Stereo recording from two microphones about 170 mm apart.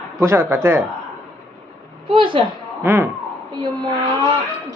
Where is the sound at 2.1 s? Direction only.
30° right (ahead or behind).